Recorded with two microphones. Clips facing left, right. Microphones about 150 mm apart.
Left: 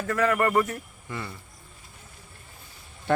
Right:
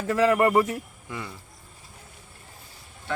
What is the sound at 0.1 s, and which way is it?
Speech, 25° right (ahead or behind).